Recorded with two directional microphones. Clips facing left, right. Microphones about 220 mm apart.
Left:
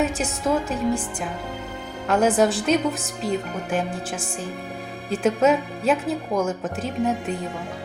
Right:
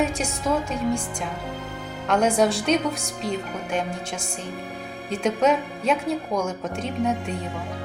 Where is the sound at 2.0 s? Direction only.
5° left (ahead or behind).